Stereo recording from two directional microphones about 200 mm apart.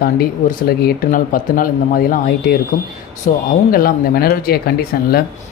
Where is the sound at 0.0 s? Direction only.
50° left (ahead or behind).